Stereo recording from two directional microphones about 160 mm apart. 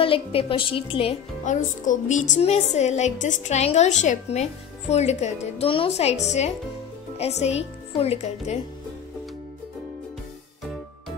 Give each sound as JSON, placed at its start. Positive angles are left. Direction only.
{"t": 0.0, "sound": "a woman's voice", "side_deg": 35}